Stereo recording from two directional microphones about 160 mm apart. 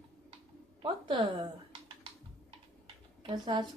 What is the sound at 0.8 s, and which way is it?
Speech, 30° right (ahead or behind).